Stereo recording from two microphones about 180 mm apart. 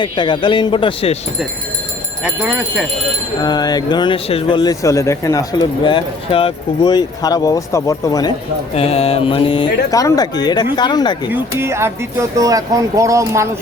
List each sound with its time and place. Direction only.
0.0 s speech: 25° left (ahead or behind)
2.2 s speech: 5° right (ahead or behind)
3.4 s speech: 20° left (ahead or behind)
8.7 s mantra: 35° left (ahead or behind)
9.9 s speech: 20° left (ahead or behind)
11.3 s speech: 15° right (ahead or behind)